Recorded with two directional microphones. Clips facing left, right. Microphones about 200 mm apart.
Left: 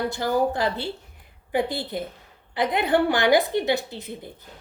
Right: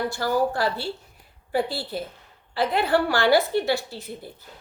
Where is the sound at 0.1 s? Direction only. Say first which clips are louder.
Left 1 dB; 20° left (ahead or behind).